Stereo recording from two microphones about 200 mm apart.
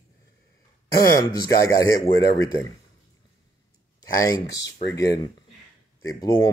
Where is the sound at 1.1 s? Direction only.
15° left (ahead or behind).